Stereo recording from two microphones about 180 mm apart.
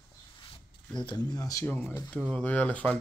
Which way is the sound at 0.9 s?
25° left (ahead or behind).